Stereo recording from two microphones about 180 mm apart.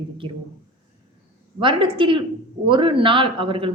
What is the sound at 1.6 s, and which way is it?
A woman's voice, 25° right (ahead or behind).